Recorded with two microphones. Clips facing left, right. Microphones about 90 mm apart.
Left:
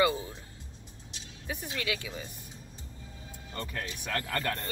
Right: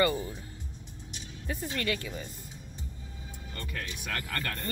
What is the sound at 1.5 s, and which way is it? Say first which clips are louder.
Speech: right 2 dB; 10° left (ahead or behind).